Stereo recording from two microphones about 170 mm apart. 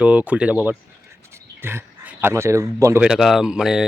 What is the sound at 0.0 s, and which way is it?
A man's voice, 5° right (ahead or behind).